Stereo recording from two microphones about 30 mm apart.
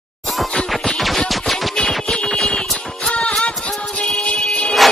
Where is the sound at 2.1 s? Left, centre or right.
Left.